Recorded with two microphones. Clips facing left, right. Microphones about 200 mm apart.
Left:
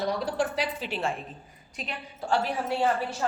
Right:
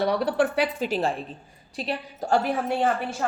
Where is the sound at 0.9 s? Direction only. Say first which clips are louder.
Right 5 dB; 40° right (ahead or behind); by 3.2 s 55° right (ahead or behind).